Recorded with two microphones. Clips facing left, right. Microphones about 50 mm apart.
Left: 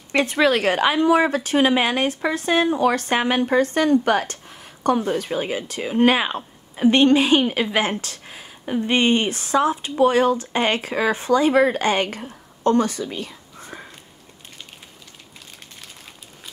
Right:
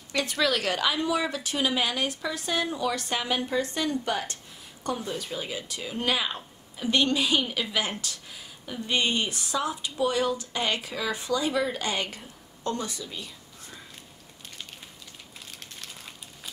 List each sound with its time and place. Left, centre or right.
0.1 s a woman's voice: left